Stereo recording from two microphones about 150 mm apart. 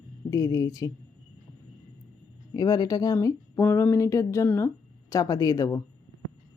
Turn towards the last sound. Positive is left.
turn(degrees=25)  # may be behind; listen again after turning